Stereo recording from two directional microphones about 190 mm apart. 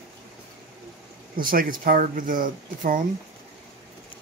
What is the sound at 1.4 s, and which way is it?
Speech, 45° right (ahead or behind).